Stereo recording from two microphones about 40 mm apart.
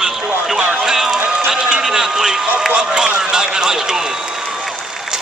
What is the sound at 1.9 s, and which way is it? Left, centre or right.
Run, centre.